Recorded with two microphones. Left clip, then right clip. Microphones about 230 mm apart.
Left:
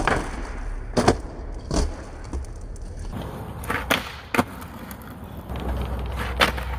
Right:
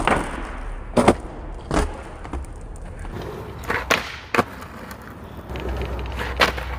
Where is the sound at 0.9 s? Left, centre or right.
Centre.